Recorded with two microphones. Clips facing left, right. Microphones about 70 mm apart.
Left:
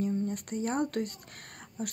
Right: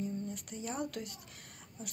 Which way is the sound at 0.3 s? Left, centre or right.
Left.